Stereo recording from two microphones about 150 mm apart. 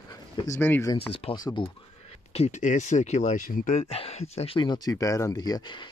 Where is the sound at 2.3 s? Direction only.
45° left (ahead or behind).